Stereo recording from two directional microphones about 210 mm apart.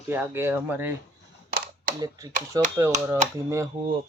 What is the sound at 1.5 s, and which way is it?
Camera, 45° right (ahead or behind).